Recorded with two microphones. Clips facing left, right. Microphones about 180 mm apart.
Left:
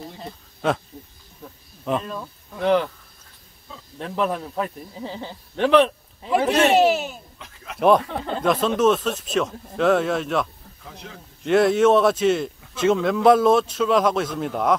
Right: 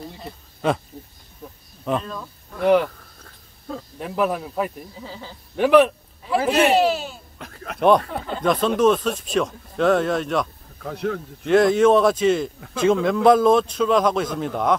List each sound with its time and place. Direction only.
0.2 s a sound: centre (ahead or behind)
2.6 s speech: 10° right (ahead or behind)
4.0 s speech: 10° right (ahead or behind)
5.0 s speech: 25° left (ahead or behind)
5.6 s speech: 10° right (ahead or behind)
6.8 s speech: 20° left (ahead or behind)
7.3 s a sound: 55° right (ahead or behind)
7.8 s speech: 5° left (ahead or behind)
10.8 s speech: 65° right (ahead or behind)
11.4 s speech: 5° left (ahead or behind)